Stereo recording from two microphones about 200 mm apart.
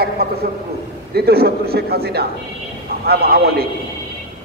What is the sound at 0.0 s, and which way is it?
A man's voice, 50° right (ahead or behind).